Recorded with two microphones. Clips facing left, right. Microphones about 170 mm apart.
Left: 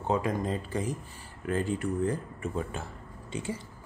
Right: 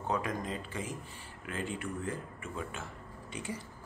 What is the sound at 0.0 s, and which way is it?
Speech, 30° left (ahead or behind).